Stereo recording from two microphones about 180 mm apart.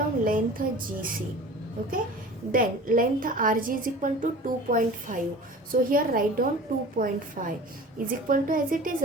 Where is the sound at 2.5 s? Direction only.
50° right (ahead or behind).